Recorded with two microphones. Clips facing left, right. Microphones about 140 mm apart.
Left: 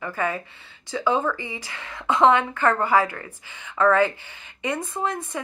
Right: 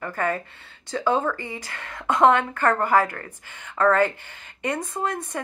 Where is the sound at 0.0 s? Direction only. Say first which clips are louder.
Right 1 dB; 50° right (ahead or behind).